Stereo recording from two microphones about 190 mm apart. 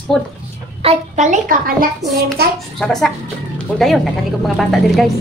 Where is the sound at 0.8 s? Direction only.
35° right (ahead or behind).